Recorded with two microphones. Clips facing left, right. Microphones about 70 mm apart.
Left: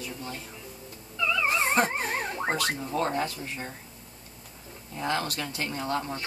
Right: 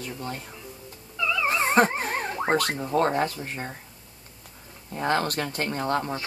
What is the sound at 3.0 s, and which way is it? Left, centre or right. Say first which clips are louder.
Speech: right 6 dB; right.